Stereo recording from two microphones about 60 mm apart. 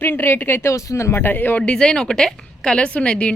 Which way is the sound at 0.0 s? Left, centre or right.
Left.